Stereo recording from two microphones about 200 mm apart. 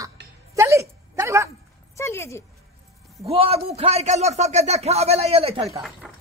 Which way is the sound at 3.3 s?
30° right (ahead or behind).